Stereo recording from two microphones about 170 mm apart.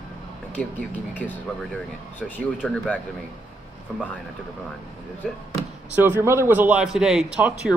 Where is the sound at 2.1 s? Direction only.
10° left (ahead or behind).